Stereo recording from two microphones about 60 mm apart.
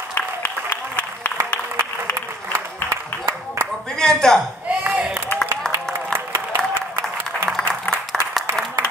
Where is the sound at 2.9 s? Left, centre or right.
Right.